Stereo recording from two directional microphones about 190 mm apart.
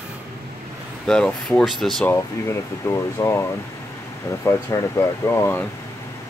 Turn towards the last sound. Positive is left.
turn(degrees=15)  # may be behind; listen again after turning